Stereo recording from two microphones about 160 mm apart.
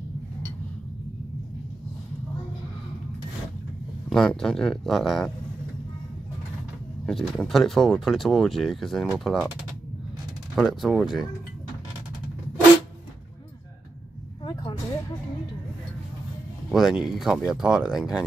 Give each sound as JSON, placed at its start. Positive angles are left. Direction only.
{"t": 4.1, "sound": "speech", "side_deg": 5}
{"t": 7.1, "sound": "speech", "side_deg": 0}
{"t": 10.5, "sound": "speech", "side_deg": 0}
{"t": 14.4, "sound": "vehicle", "side_deg": 25}
{"t": 16.7, "sound": "speech", "side_deg": 0}